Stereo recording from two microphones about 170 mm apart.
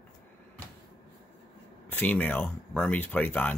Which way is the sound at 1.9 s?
10° left (ahead or behind).